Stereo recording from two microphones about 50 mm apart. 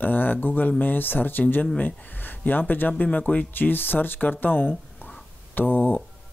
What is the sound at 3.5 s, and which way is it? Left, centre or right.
Speech, left.